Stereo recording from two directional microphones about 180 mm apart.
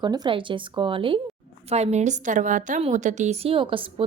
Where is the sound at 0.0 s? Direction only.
25° right (ahead or behind).